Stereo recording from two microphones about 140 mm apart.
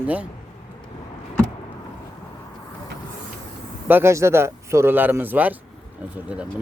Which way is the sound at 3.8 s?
15° right (ahead or behind).